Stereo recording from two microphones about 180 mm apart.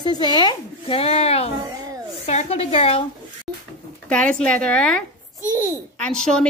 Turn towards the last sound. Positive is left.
turn(degrees=5)  # may be behind; listen again after turning